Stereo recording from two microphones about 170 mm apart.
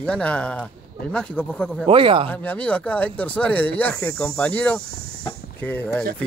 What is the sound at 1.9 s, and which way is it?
Speech, 30° right (ahead or behind).